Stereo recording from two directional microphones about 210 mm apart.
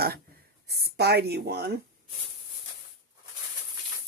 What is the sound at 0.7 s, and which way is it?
Speech, 50° right (ahead or behind).